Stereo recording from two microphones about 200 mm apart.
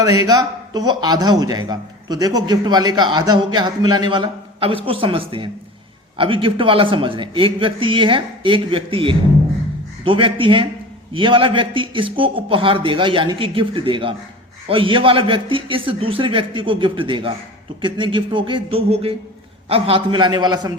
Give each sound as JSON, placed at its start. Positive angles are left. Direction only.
{"t": 0.0, "sound": "speech", "side_deg": -20}